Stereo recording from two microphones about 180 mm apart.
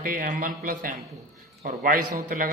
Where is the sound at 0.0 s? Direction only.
50° right (ahead or behind).